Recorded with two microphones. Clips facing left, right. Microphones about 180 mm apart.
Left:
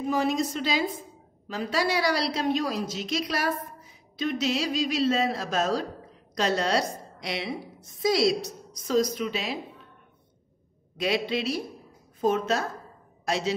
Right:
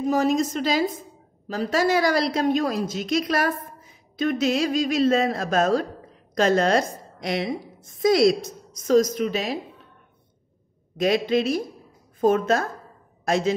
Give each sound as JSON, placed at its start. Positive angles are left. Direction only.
{"t": 0.0, "sound": "a woman's voice", "side_deg": -45}
{"t": 11.0, "sound": "a woman's voice", "side_deg": -45}